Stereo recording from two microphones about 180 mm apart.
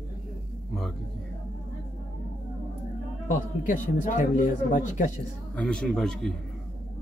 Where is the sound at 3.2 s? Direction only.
45° left (ahead or behind).